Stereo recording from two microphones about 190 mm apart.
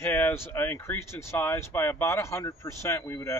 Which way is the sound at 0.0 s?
10° left (ahead or behind).